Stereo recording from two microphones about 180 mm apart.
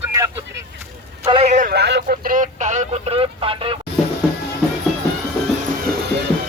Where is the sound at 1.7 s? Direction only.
65° right (ahead or behind); by 3.7 s 30° right (ahead or behind).